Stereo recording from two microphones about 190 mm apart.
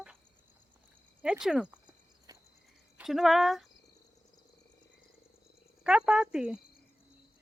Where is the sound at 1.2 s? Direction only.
5° right (ahead or behind).